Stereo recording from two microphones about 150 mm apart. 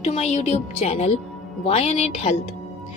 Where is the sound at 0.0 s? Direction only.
45° left (ahead or behind).